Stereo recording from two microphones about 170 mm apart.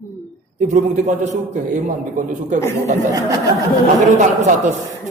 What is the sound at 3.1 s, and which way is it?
Speech, 20° right (ahead or behind).